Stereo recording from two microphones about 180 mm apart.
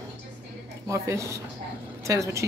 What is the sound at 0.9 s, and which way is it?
Speech, 15° right (ahead or behind).